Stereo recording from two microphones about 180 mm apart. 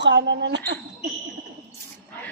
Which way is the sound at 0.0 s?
80° right.